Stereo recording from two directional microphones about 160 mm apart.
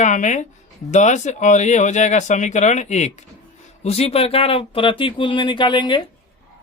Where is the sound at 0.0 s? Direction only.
50° left (ahead or behind).